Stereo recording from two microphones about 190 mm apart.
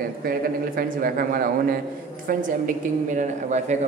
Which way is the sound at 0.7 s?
50° right (ahead or behind).